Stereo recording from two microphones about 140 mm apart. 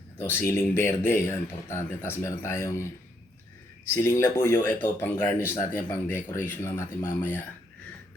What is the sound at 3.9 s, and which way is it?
Speech, 20° left (ahead or behind).